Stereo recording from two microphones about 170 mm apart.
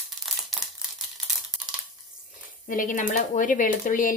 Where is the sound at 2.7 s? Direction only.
50° left (ahead or behind).